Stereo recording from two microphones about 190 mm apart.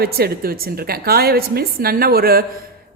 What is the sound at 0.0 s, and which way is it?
A woman's voice, 55° right (ahead or behind).